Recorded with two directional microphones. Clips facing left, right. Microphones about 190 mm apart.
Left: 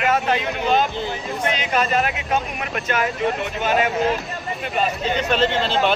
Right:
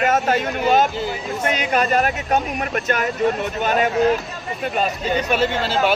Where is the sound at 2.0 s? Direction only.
45° right (ahead or behind).